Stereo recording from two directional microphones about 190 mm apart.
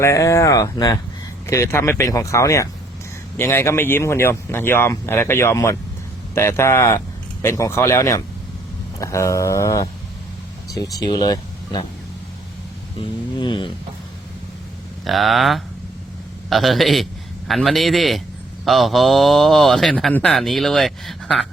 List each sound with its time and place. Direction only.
0.0 s speech: 15° left (ahead or behind)
13.0 s speech: 25° left (ahead or behind)
15.0 s speech: centre (ahead or behind)